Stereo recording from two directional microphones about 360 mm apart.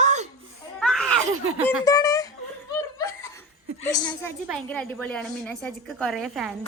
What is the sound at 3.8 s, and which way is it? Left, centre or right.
A woman's voice, centre.